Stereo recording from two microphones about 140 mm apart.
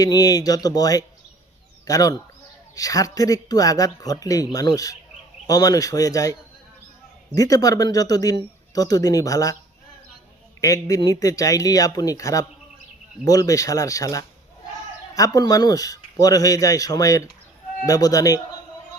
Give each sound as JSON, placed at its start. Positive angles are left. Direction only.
{"t": 0.0, "sound": "speech", "side_deg": 25}
{"t": 7.3, "sound": "speech", "side_deg": 25}
{"t": 10.6, "sound": "speech", "side_deg": 25}